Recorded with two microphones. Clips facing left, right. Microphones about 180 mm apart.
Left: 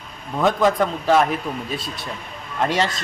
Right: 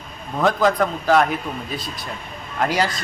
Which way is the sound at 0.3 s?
Centre (ahead or behind).